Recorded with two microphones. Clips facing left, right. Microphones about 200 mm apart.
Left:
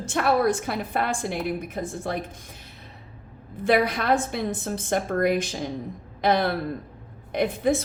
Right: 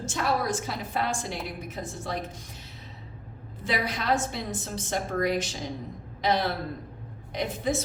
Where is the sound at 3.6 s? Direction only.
55° left (ahead or behind).